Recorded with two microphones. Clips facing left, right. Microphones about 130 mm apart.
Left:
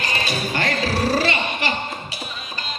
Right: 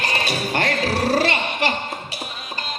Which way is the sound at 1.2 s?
55° right (ahead or behind).